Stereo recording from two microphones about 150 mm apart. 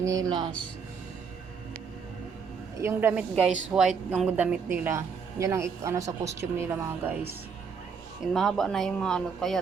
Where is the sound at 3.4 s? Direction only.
5° right (ahead or behind).